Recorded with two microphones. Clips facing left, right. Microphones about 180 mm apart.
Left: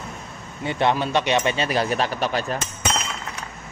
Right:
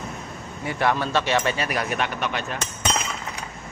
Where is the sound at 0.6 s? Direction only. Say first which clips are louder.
Left 2 dB; 25° left (ahead or behind).